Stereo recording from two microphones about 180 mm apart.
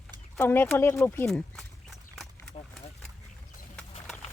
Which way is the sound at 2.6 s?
35° left (ahead or behind).